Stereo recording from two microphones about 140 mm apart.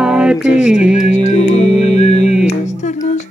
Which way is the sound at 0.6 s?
5° right (ahead or behind).